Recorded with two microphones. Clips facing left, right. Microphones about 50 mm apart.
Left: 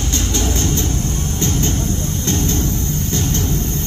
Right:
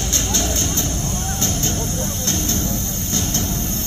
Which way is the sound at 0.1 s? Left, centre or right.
Centre.